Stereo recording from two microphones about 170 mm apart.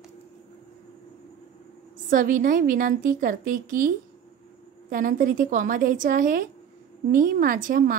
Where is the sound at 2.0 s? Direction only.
50° right (ahead or behind).